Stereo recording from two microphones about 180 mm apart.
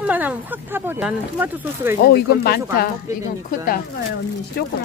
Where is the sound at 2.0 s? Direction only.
60° left (ahead or behind).